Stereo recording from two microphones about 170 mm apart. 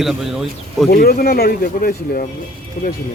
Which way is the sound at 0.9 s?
65° left (ahead or behind).